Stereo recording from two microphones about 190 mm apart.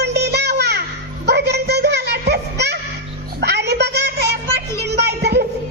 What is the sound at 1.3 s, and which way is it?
Music, 60° right (ahead or behind).